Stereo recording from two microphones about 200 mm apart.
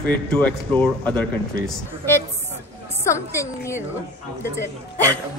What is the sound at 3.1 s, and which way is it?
Speech, 15° left (ahead or behind).